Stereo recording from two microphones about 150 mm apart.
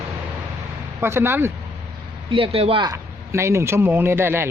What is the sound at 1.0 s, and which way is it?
Speech, 15° right (ahead or behind).